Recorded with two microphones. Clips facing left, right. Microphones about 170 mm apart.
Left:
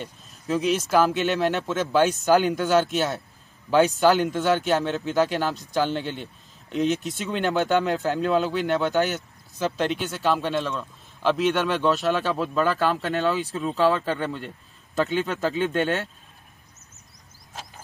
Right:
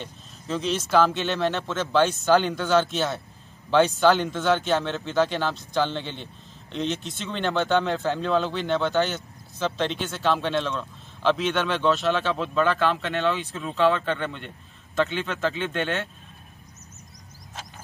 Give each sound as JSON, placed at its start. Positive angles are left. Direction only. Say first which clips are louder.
{"t": 0.0, "sound": "speech", "louder": "left 2 dB", "side_deg": 10}
{"t": 12.7, "sound": "speech", "louder": "left 1 dB", "side_deg": 40}